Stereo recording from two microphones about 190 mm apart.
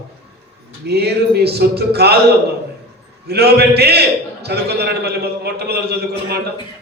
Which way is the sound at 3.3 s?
60° right (ahead or behind).